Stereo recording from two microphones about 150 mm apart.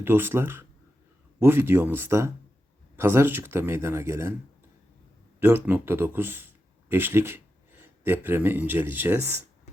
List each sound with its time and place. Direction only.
0.0 s speech: 15° right (ahead or behind)
5.4 s speech: 15° right (ahead or behind)